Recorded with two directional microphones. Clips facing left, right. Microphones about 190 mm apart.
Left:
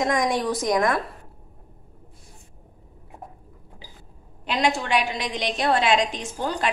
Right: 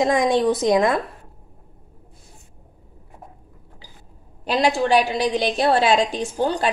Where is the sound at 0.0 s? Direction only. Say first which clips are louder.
Right 5 dB; 25° right (ahead or behind).